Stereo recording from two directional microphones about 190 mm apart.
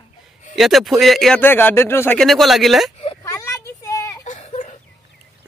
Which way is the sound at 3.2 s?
15° left (ahead or behind).